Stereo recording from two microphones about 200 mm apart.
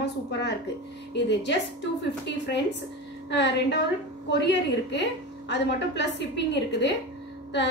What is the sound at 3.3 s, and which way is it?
A woman's voice, 60° left (ahead or behind).